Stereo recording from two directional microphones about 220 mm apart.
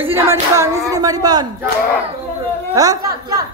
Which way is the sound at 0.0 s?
10° right (ahead or behind).